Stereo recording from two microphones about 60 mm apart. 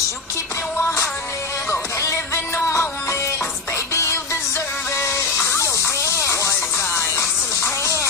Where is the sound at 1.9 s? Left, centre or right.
Left.